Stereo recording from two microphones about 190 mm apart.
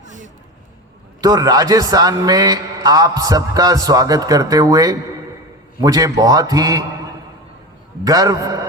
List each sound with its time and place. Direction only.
0.0 s a sound: 40° right (ahead or behind)
1.2 s a man's voice: 20° right (ahead or behind)
8.0 s a man's voice: 20° right (ahead or behind)